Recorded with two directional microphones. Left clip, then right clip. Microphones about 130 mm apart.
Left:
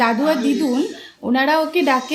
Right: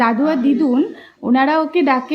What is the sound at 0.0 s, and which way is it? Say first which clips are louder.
A woman's voice: right 1 dB; 20° left (ahead or behind).